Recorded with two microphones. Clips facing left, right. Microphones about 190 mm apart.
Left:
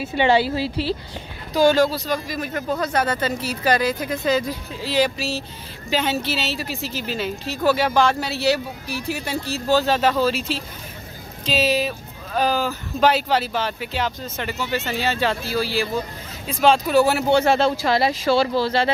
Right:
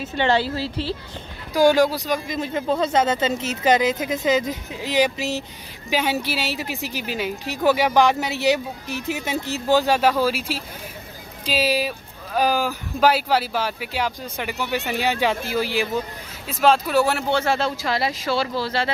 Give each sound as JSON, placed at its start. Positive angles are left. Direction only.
{"t": 0.0, "sound": "a woman's voice", "side_deg": 10}
{"t": 1.5, "sound": "a woman's voice", "side_deg": -15}
{"t": 16.4, "sound": "speech", "side_deg": 0}
{"t": 17.3, "sound": "speech", "side_deg": 20}